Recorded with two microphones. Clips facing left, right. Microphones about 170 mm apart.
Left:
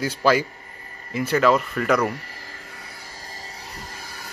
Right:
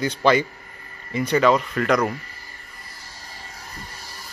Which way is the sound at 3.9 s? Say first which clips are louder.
Left 2 dB; 55° left (ahead or behind).